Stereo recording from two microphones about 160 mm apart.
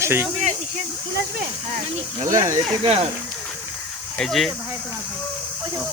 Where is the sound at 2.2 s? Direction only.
50° right (ahead or behind).